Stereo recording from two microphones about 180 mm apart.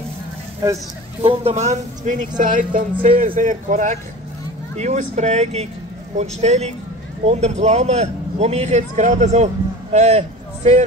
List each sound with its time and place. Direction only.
1.2 s a man's voice: 35° right (ahead or behind)